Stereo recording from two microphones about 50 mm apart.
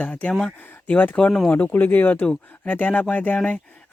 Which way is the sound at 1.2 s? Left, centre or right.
Centre.